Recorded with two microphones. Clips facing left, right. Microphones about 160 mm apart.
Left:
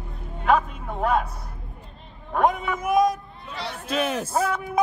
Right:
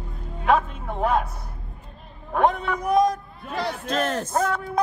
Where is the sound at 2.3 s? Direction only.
Centre (ahead or behind).